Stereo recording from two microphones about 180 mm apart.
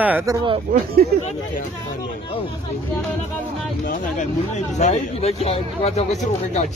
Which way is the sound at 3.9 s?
40° left (ahead or behind).